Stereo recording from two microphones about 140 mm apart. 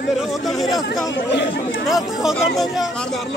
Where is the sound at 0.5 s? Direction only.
Centre (ahead or behind).